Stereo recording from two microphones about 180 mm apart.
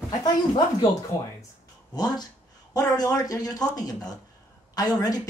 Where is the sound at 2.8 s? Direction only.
15° left (ahead or behind).